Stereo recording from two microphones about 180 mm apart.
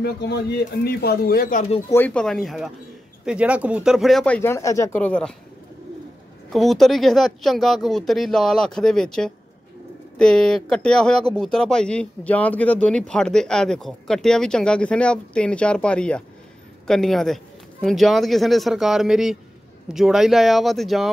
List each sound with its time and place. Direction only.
0.0 s speech: 65° left (ahead or behind); by 1.8 s 45° left (ahead or behind)
1.9 s speech: 10° left (ahead or behind)
6.5 s speech: centre (ahead or behind)